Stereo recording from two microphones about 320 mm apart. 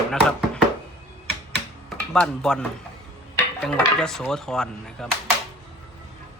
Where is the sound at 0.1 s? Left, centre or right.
Centre.